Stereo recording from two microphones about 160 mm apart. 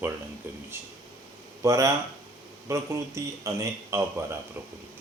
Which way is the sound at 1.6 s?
20° right (ahead or behind).